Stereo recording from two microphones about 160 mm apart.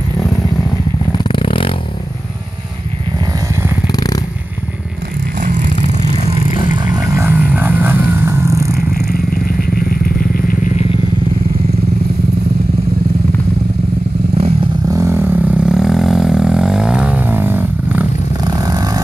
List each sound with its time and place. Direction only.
1.1 s vehicle: 30° left (ahead or behind)
3.8 s purr: 25° left (ahead or behind)
5.4 s vehicle: 55° right (ahead or behind)
6.8 s vehicle: 25° right (ahead or behind)
8.7 s vehicle: 75° left (ahead or behind)
14.3 s vehicle: 40° right (ahead or behind)
14.9 s a sound: 15° right (ahead or behind)
18.5 s vehicle: 25° right (ahead or behind)